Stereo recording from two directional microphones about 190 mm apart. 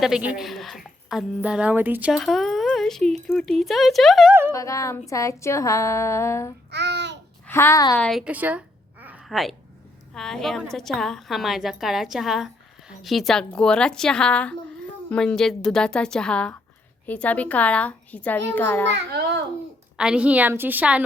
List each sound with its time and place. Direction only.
0.0 s a woman's voice: 5° right (ahead or behind)
4.5 s a sound: 15° left (ahead or behind)
6.7 s babbling: 65° right (ahead or behind)
7.4 s a woman's voice: 10° left (ahead or behind)
7.9 s a woman's voice: 5° left (ahead or behind)
8.2 s a sound: 10° right (ahead or behind)
10.2 s a woman's voice: centre (ahead or behind)
17.1 s a sound: 5° left (ahead or behind)
18.9 s a child's voice: 60° right (ahead or behind)
20.0 s a woman's voice: 5° right (ahead or behind)